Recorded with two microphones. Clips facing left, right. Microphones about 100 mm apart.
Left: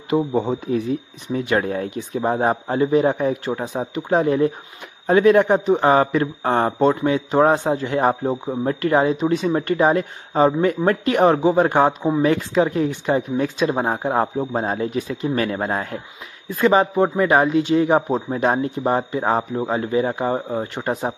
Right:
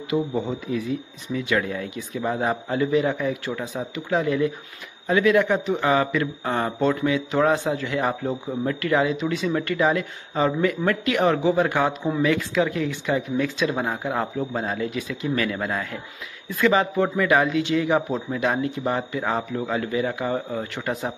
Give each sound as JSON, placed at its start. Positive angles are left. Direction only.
{"t": 0.1, "sound": "speech", "side_deg": 45}
{"t": 3.6, "sound": "speech", "side_deg": 55}
{"t": 4.1, "sound": "speech", "side_deg": 40}
{"t": 9.5, "sound": "speech", "side_deg": 35}
{"t": 15.2, "sound": "speech", "side_deg": 35}